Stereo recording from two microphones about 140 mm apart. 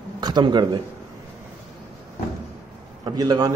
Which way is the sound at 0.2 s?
30° right (ahead or behind).